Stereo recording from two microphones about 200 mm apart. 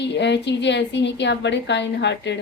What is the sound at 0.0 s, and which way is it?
A woman's voice, 60° left (ahead or behind).